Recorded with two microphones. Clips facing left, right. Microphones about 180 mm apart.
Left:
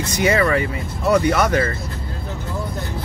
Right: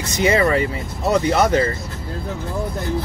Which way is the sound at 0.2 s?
25° right (ahead or behind).